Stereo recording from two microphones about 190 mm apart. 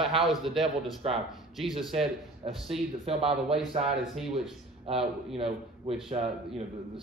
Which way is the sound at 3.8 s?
Centre (ahead or behind).